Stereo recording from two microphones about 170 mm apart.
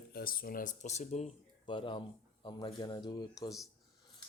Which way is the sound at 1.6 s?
30° left (ahead or behind).